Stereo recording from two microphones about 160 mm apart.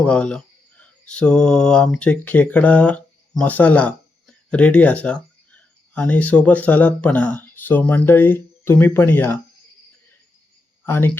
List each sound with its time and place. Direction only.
0.0 s speech: 5° left (ahead or behind)
10.8 s speech: 15° left (ahead or behind)